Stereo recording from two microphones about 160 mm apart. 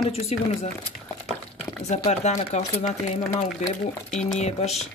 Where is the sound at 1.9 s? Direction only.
45° left (ahead or behind).